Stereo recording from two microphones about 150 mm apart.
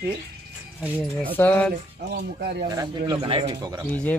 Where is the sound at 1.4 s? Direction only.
10° left (ahead or behind).